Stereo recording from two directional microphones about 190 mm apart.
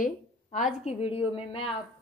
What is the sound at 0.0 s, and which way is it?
A woman's voice, 40° left (ahead or behind).